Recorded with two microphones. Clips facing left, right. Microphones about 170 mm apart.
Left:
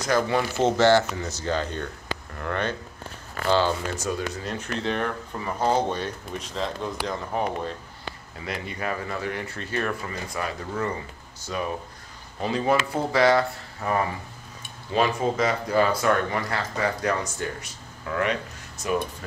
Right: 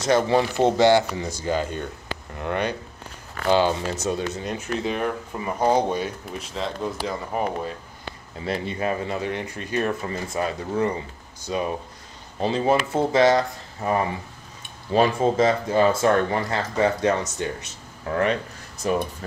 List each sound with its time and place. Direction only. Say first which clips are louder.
0.0 s speech: right 4 dB; 25° right (ahead or behind)
4.6 s speech: right 1 dB; 10° right (ahead or behind)
8.5 s speech: right 5 dB; 25° right (ahead or behind)
14.9 s speech: right 4 dB; 30° right (ahead or behind)
18.0 s speech: right 3 dB; 35° right (ahead or behind)